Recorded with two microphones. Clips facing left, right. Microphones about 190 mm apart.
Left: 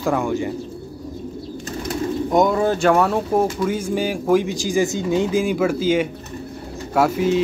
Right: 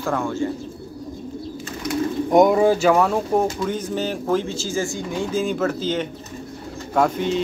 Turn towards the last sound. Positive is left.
turn(degrees=5)  # may be behind; listen again after turning